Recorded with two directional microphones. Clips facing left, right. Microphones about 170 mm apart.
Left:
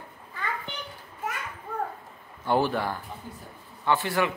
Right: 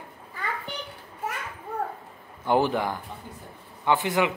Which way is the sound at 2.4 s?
15° right (ahead or behind).